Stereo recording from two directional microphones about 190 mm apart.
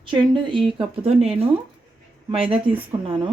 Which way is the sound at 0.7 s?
30° right (ahead or behind).